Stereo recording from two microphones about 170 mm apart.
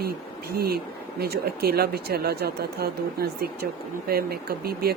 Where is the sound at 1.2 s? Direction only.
65° right (ahead or behind).